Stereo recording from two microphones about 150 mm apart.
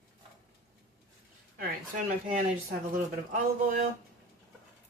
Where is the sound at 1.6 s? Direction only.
60° right (ahead or behind).